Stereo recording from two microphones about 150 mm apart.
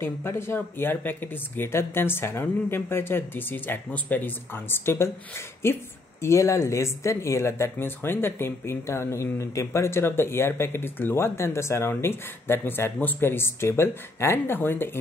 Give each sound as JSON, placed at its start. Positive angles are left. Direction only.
{"t": 0.0, "sound": "speech", "side_deg": 15}